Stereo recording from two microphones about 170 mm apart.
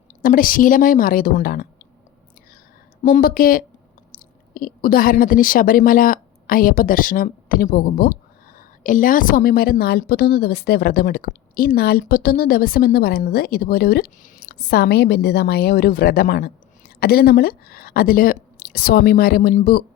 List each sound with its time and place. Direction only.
0.2 s a woman's voice: 55° left (ahead or behind)
3.0 s a woman's voice: 55° left (ahead or behind)